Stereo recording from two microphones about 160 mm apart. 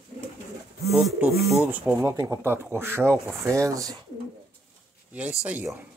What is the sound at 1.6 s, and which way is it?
Speech, 10° right (ahead or behind).